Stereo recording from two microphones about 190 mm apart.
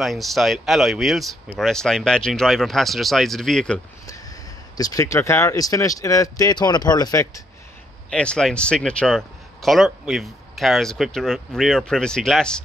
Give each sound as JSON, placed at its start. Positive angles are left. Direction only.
{"t": 0.0, "sound": "speech", "side_deg": 0}
{"t": 4.7, "sound": "speech", "side_deg": 20}
{"t": 8.1, "sound": "speech", "side_deg": 5}